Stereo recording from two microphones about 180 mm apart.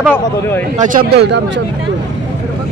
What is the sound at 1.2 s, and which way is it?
Speech, 70° right (ahead or behind).